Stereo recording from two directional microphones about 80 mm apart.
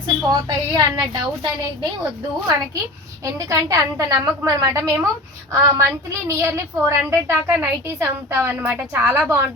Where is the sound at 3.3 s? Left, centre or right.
Right.